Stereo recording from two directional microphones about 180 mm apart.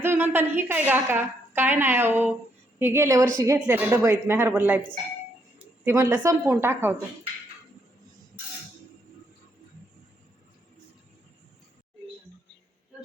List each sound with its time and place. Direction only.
0.0 s a woman's voice: 10° right (ahead or behind)
5.8 s a woman's voice: 15° right (ahead or behind)